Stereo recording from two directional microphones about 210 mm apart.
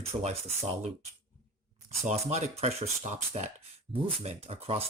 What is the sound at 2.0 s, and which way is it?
Speech, 30° right (ahead or behind).